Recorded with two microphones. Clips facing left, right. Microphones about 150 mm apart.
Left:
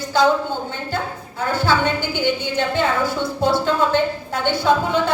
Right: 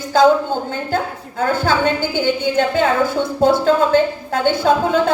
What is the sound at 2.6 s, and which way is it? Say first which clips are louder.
A woman's voice: right 5 dB; 50° right (ahead or behind).